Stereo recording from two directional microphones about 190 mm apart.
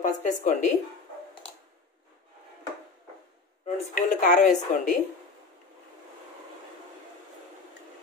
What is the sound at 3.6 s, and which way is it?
A woman's voice, 40° left (ahead or behind).